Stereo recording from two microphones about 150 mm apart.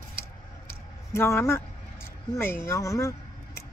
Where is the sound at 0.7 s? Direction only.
15° left (ahead or behind).